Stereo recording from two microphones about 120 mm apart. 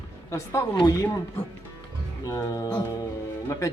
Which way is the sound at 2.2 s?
25° left (ahead or behind).